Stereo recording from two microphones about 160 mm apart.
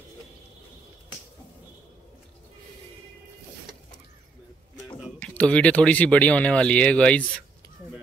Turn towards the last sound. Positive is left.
turn(degrees=5)  # may be behind; listen again after turning